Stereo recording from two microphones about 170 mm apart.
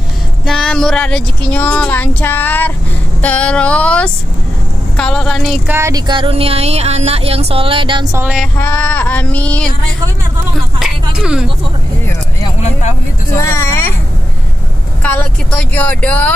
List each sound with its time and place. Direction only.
0.5 s speech: 5° left (ahead or behind)
4.9 s a sound: 5° left (ahead or behind)
5.8 s speech: 20° right (ahead or behind)
8.2 s music: 5° right (ahead or behind)
8.5 s speech: 10° left (ahead or behind)
11.1 s speech: 5° right (ahead or behind)
13.4 s speech: 15° left (ahead or behind)
15.0 s speech: 10° left (ahead or behind)